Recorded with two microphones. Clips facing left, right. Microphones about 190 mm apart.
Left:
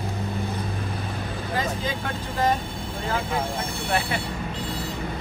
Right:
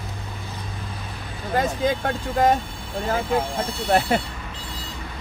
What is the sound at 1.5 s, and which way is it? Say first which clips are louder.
Vehicle: right 7 dB; 50° right (ahead or behind).